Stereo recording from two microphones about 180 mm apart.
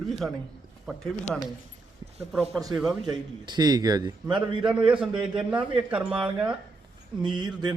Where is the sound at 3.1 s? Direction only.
25° right (ahead or behind).